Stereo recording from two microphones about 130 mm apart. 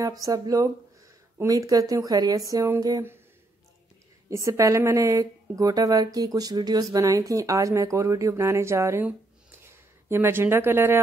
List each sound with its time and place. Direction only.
0.0 s speech: 25° right (ahead or behind)
4.3 s speech: 25° right (ahead or behind)